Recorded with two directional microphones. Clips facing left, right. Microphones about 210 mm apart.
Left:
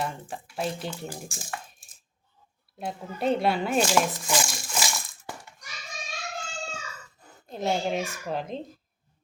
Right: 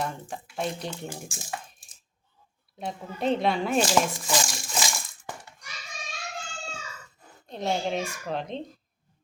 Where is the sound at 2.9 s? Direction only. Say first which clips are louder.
Even; 5° left (ahead or behind).